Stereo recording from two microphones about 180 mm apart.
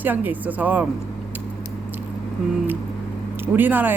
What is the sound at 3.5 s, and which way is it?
Speech, 10° right (ahead or behind).